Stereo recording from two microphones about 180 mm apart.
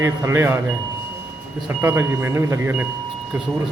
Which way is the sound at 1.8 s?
15° right (ahead or behind).